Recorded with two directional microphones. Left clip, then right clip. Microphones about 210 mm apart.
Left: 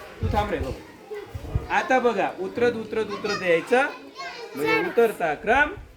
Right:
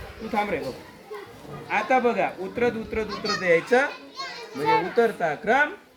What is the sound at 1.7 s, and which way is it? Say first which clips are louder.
Speech: left 1 dB; 25° left (ahead or behind).